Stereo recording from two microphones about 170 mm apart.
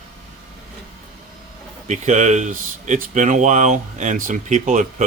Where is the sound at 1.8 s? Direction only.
45° right (ahead or behind).